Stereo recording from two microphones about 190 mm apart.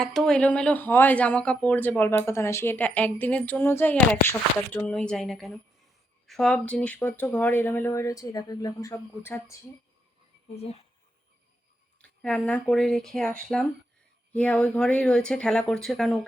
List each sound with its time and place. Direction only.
0.0 s speech: centre (ahead or behind)
10.5 s speech: 35° left (ahead or behind)
12.0 s speech: 5° left (ahead or behind)
14.3 s speech: 5° left (ahead or behind)